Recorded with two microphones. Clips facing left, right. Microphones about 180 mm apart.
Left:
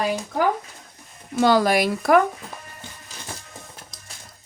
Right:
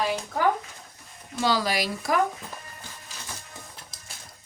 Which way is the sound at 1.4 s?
55° left (ahead or behind).